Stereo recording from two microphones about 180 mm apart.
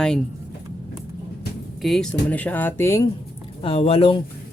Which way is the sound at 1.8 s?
Centre (ahead or behind).